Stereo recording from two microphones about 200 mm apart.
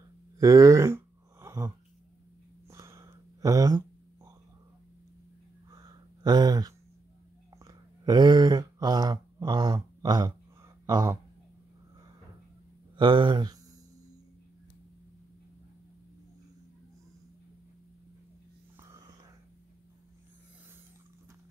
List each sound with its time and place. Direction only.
0.4 s a sound: 15° right (ahead or behind)
2.7 s whispering: 15° right (ahead or behind)
5.7 s a sound: 20° right (ahead or behind)
10.9 s speech: 20° right (ahead or behind)
12.9 s speech: 25° right (ahead or behind)
18.8 s whispering: 15° right (ahead or behind)